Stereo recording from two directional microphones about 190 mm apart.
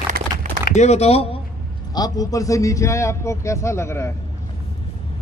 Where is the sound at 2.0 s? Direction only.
20° left (ahead or behind).